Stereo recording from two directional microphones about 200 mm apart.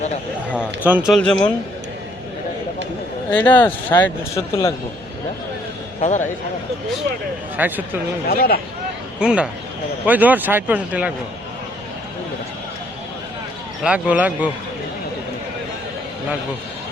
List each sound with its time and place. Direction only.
0.6 s speech: 10° right (ahead or behind)
1.1 s a man's voice: 5° left (ahead or behind)
3.2 s speech: 10° left (ahead or behind)
6.0 s a man's voice: 35° left (ahead or behind)
7.6 s speech: 10° right (ahead or behind)
8.3 s speech: 50° left (ahead or behind)
9.1 s a man's voice: 5° right (ahead or behind)
13.8 s speech: 5° right (ahead or behind)